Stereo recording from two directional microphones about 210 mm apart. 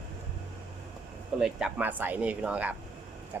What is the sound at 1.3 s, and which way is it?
Speech, 5° right (ahead or behind).